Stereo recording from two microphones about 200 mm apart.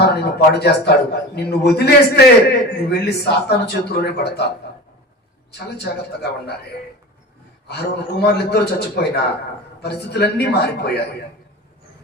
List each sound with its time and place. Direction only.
0.0 s a man's voice: 55° left (ahead or behind)
8.2 s a man's voice: 55° left (ahead or behind)